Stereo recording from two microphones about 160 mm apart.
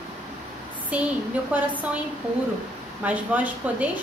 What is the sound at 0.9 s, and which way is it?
Speech, 10° right (ahead or behind).